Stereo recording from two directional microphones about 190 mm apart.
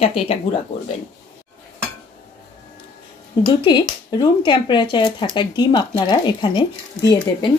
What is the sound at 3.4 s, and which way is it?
Speech, 25° left (ahead or behind).